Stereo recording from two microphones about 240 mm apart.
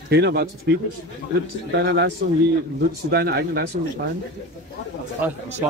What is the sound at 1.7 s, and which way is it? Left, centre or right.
Speech, right.